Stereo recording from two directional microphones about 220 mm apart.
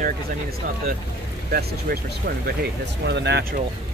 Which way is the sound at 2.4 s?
50° right (ahead or behind).